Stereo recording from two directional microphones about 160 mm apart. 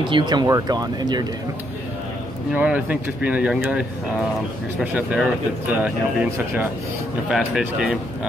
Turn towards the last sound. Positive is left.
turn(degrees=-5)  # may be behind; listen again after turning